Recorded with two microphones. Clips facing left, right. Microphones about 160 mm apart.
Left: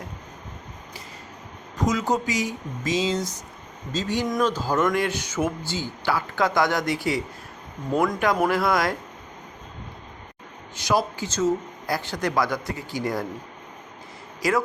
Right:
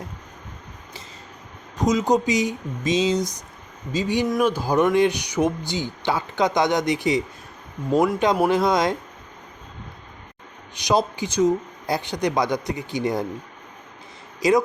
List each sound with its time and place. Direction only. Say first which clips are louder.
1.8 s speech: right 4 dB; 20° right (ahead or behind)
10.8 s speech: right 2 dB; 15° right (ahead or behind)
14.4 s speech: right 5 dB; 20° right (ahead or behind)